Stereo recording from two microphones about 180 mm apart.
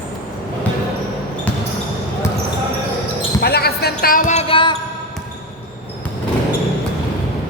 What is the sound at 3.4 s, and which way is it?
Music, 60° left (ahead or behind).